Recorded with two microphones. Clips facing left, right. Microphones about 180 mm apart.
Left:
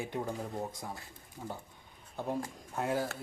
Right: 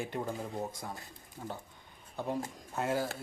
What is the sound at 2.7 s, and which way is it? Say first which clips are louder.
Speech: even; 5° right (ahead or behind).